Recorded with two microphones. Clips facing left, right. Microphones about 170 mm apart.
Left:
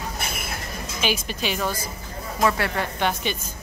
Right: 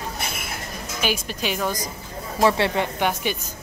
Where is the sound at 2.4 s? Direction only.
25° right (ahead or behind).